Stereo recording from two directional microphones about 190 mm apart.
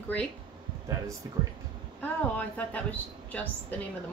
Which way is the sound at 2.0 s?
10° left (ahead or behind).